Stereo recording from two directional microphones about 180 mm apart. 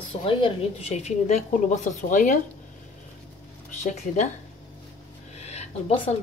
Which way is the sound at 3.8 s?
40° left (ahead or behind).